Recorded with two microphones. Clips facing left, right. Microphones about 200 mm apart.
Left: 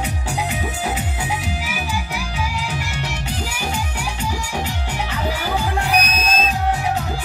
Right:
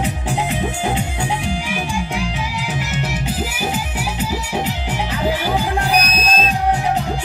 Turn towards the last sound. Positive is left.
turn(degrees=-35)  # may be behind; listen again after turning